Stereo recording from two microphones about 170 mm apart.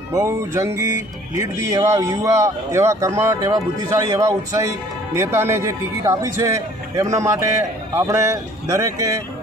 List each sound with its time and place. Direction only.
0.1 s music: 20° right (ahead or behind)
1.3 s a man's voice: 20° right (ahead or behind)